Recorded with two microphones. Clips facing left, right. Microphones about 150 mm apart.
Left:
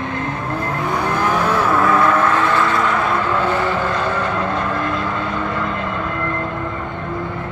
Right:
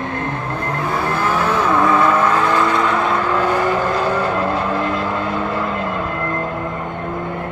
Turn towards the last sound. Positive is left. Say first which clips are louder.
# right 1 dB
turn(degrees=-40)  # may be behind; listen again after turning